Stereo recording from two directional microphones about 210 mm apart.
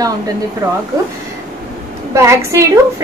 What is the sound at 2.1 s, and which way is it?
Speech, 15° right (ahead or behind).